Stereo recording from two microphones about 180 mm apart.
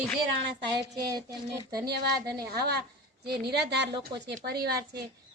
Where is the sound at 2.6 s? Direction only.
60° right (ahead or behind).